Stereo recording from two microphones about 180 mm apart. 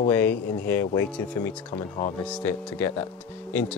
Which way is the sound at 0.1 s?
10° left (ahead or behind).